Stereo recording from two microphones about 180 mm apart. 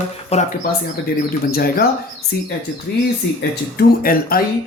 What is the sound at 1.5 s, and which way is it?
Speech, 55° left (ahead or behind).